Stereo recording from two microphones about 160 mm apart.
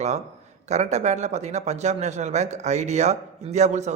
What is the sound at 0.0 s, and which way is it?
Speech, 45° right (ahead or behind).